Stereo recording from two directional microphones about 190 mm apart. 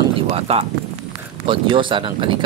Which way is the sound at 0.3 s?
30° right (ahead or behind).